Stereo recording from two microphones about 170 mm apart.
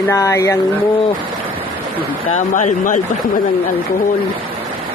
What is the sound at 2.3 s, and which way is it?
Speech, 45° left (ahead or behind).